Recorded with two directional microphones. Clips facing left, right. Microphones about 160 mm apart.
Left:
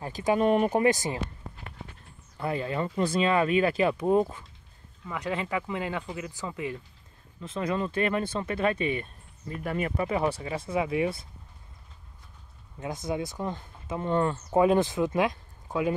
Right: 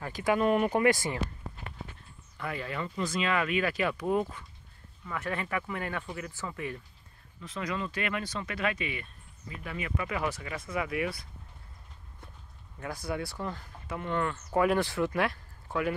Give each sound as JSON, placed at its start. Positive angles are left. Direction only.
{"t": 0.0, "sound": "speech", "side_deg": 20}
{"t": 0.5, "sound": "speech", "side_deg": 35}
{"t": 0.8, "sound": "speech", "side_deg": 20}
{"t": 2.3, "sound": "speech", "side_deg": 30}
{"t": 5.0, "sound": "speech", "side_deg": 15}
{"t": 12.8, "sound": "speech", "side_deg": 20}
{"t": 14.0, "sound": "speech", "side_deg": 35}
{"t": 14.5, "sound": "speech", "side_deg": 20}